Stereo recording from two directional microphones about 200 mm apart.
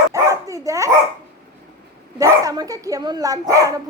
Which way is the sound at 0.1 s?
15° right (ahead or behind).